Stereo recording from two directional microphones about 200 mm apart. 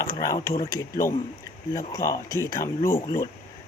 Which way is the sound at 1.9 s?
15° left (ahead or behind).